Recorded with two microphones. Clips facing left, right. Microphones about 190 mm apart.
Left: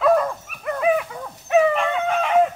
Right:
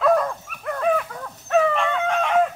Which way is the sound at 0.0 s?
5° left (ahead or behind).